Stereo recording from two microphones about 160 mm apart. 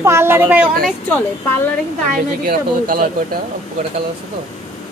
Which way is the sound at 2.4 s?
65° right (ahead or behind).